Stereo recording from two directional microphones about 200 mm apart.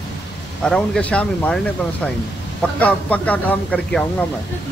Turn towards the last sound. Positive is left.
turn(degrees=5)  # may be behind; listen again after turning